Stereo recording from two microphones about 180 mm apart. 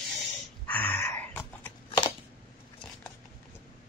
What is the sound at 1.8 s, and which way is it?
Shuffling cards, 30° left (ahead or behind).